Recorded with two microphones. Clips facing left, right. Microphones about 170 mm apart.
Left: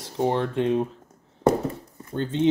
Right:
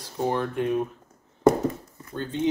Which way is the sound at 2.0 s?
25° left (ahead or behind).